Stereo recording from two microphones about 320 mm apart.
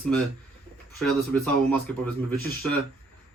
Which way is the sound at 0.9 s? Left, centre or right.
Centre.